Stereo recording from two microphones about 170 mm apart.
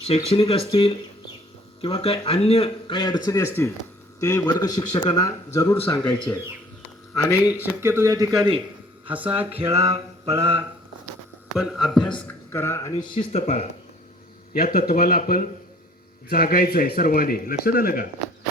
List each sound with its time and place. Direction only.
0.3 s speech: 35° left (ahead or behind); by 7.6 s 15° left (ahead or behind)
7.6 s speech: 15° right (ahead or behind)
9.0 s speech: 10° right (ahead or behind)
9.3 s music: 35° right (ahead or behind)
11.5 s speech: centre (ahead or behind)
12.2 s speech: 15° left (ahead or behind)
13.1 s speech: 40° left (ahead or behind)
14.5 s speech: 60° left (ahead or behind)